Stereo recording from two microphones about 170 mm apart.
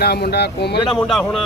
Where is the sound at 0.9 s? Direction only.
Centre (ahead or behind).